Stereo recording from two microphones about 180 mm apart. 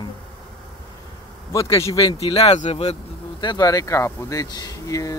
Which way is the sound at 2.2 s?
35° left (ahead or behind).